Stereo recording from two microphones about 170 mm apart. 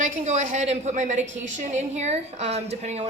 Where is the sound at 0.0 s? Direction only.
45° right (ahead or behind).